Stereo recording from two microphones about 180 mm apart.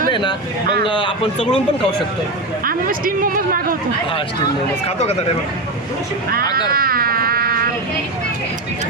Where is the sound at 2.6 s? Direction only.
50° right (ahead or behind).